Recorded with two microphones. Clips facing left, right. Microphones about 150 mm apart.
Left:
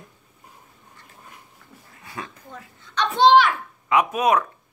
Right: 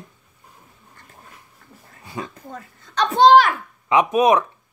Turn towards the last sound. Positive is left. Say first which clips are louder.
# right 4 dB
turn(degrees=-20)  # may be behind; listen again after turning